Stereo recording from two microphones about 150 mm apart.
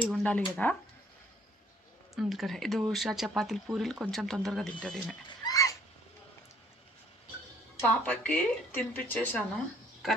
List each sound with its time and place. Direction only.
0.1 s speech: 10° left (ahead or behind)
2.1 s speech: centre (ahead or behind)
5.4 s a sound: 25° left (ahead or behind)
8.0 s speech: 10° left (ahead or behind)